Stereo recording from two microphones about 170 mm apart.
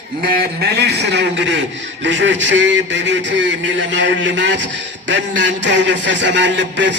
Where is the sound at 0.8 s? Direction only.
75° right (ahead or behind).